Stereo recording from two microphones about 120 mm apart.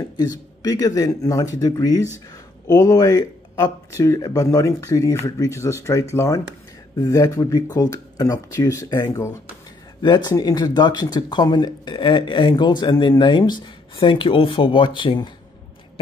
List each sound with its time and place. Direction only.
0.2 s speech: 30° left (ahead or behind)